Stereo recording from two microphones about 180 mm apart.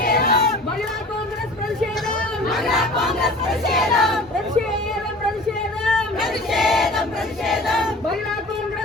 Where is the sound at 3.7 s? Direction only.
Centre (ahead or behind).